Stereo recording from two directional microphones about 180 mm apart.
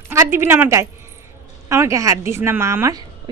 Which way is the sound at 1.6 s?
15° right (ahead or behind).